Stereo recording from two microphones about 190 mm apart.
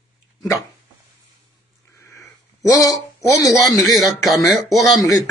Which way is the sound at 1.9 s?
15° left (ahead or behind).